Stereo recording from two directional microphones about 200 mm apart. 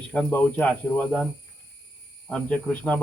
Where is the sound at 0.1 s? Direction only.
5° left (ahead or behind).